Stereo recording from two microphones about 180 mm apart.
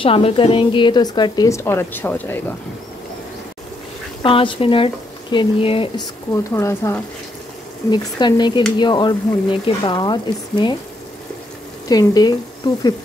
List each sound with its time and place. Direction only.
0.0 s a woman's voice: 30° left (ahead or behind); by 2.4 s 10° left (ahead or behind)
4.2 s speech: 30° left (ahead or behind)
6.5 s a woman's voice: 15° left (ahead or behind)
11.9 s a woman's voice: 20° left (ahead or behind)